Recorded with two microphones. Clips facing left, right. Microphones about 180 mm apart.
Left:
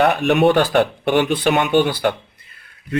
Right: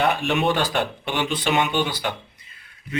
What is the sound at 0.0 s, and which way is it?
Speech, 55° left (ahead or behind).